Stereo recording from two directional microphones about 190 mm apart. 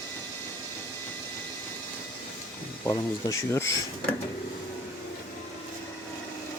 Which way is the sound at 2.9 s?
15° left (ahead or behind).